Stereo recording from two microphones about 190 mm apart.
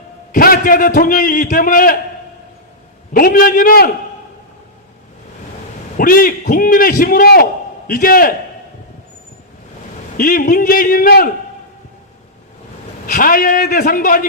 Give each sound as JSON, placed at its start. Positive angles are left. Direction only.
{"t": 0.3, "sound": "a man's voice", "side_deg": 50}
{"t": 3.1, "sound": "a man's voice", "side_deg": 50}
{"t": 6.0, "sound": "a man's voice", "side_deg": 50}
{"t": 10.2, "sound": "a man's voice", "side_deg": 45}
{"t": 13.1, "sound": "a man's voice", "side_deg": 45}